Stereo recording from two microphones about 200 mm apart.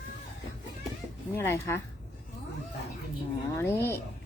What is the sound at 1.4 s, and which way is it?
Speech, 10° left (ahead or behind).